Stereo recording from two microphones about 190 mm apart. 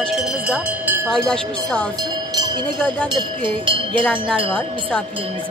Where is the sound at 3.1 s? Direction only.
25° right (ahead or behind).